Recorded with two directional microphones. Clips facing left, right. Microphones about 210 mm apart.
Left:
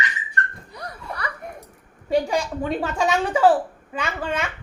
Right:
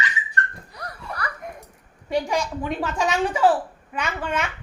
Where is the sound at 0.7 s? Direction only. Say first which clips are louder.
Left 1 dB; 25° left (ahead or behind).